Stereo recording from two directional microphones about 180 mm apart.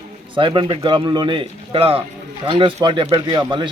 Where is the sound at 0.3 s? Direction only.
25° right (ahead or behind).